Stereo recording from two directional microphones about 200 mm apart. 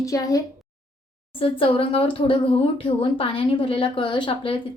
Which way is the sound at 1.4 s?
30° left (ahead or behind).